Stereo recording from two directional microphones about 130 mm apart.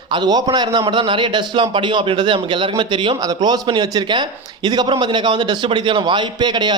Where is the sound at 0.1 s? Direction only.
35° right (ahead or behind).